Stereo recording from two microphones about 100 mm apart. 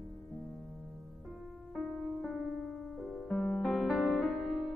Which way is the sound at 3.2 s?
15° left (ahead or behind).